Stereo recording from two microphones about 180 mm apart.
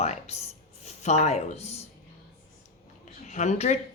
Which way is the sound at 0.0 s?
35° left (ahead or behind).